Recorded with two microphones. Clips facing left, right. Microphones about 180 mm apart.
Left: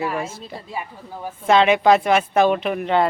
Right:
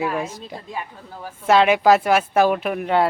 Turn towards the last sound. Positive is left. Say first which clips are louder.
# even
turn(degrees=-5)  # may be behind; listen again after turning